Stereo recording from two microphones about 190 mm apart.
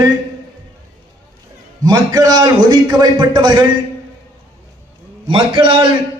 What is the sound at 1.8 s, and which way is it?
A man's voice, 20° right (ahead or behind).